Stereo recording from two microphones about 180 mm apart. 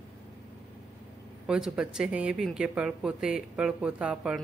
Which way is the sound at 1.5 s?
5° right (ahead or behind).